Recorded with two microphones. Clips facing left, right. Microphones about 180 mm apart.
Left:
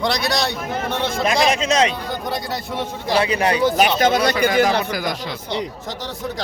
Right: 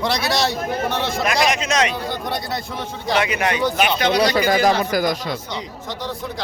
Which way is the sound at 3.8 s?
45° left (ahead or behind).